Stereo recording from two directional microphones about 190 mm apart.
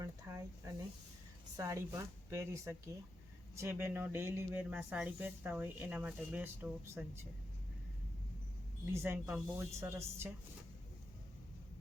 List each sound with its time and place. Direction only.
0.0 s speech: 15° right (ahead or behind)
8.9 s speech: 15° right (ahead or behind)